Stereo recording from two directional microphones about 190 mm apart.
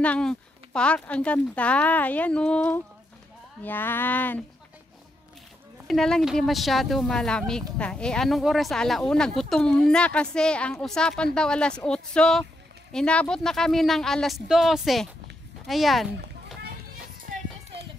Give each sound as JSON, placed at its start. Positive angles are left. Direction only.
{"t": 0.0, "sound": "speech", "side_deg": 5}
{"t": 5.9, "sound": "speech", "side_deg": 0}